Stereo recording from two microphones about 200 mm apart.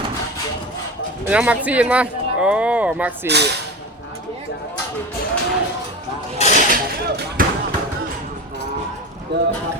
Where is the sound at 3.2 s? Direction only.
55° right (ahead or behind).